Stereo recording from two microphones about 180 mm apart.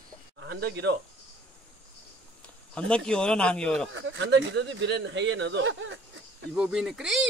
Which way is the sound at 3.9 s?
90° right.